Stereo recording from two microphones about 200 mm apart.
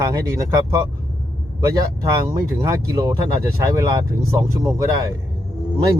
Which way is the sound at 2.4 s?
20° right (ahead or behind).